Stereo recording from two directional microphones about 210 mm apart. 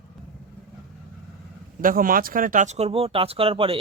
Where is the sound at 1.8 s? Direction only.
40° right (ahead or behind).